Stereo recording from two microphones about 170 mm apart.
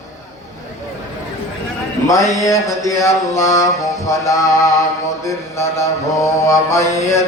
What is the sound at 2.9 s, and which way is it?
Mantra, 15° left (ahead or behind).